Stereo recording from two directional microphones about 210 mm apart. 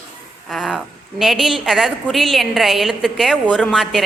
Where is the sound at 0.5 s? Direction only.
Centre (ahead or behind).